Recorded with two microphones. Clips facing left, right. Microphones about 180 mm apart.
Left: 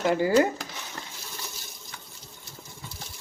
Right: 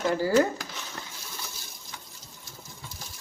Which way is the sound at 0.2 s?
15° left (ahead or behind).